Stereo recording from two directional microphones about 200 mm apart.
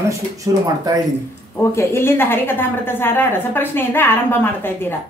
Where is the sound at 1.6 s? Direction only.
15° left (ahead or behind).